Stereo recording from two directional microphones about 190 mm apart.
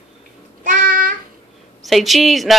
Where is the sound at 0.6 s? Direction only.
45° right (ahead or behind).